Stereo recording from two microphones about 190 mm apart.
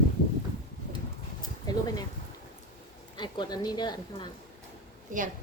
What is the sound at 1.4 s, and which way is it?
Dog, 20° left (ahead or behind).